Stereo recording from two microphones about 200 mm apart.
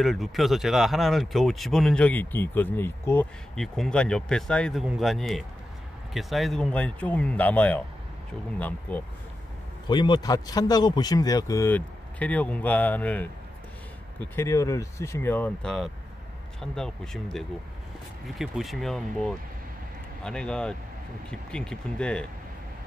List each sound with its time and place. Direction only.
0.0 s speech: centre (ahead or behind)
9.8 s speech: 20° left (ahead or behind)
14.3 s speech: 15° left (ahead or behind)